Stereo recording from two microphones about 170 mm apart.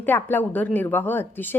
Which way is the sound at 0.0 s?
10° left (ahead or behind).